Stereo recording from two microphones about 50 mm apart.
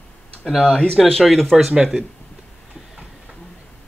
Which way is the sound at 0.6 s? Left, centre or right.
Centre.